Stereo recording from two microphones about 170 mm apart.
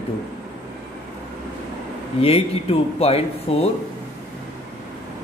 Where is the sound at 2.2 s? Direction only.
35° left (ahead or behind).